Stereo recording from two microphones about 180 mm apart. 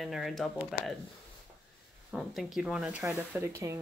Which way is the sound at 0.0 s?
Centre (ahead or behind).